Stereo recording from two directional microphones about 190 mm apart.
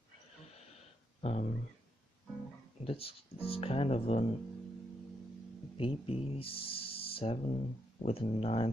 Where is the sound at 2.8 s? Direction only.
30° left (ahead or behind).